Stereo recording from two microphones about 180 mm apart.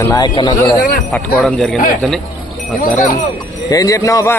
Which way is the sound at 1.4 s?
Centre (ahead or behind).